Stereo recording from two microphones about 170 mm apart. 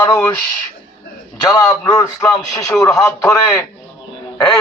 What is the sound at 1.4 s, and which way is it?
A man's voice, 20° left (ahead or behind).